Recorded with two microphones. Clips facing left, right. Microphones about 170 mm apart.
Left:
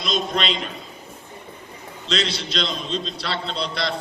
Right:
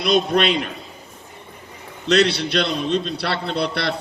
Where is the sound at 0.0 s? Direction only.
60° right (ahead or behind).